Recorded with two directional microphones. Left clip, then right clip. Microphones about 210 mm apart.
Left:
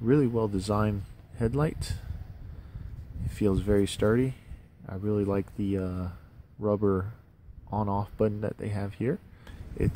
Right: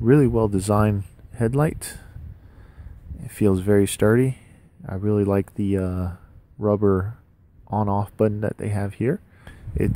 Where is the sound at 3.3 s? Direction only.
35° right (ahead or behind).